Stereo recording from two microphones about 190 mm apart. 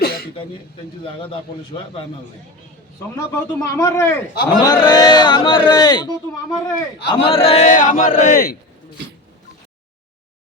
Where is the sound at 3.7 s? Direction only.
15° left (ahead or behind).